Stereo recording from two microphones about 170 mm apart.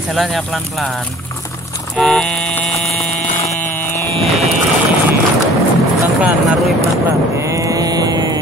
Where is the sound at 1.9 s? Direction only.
5° left (ahead or behind).